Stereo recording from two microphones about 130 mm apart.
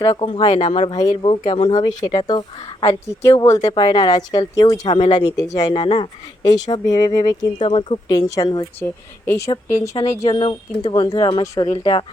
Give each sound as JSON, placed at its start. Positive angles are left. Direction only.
{"t": 0.0, "sound": "a woman's voice", "side_deg": 30}
{"t": 2.8, "sound": "a woman's voice", "side_deg": 20}
{"t": 4.9, "sound": "speech", "side_deg": 45}
{"t": 5.5, "sound": "a woman's voice", "side_deg": 30}
{"t": 8.1, "sound": "speech", "side_deg": 30}
{"t": 8.8, "sound": "a woman's voice", "side_deg": 20}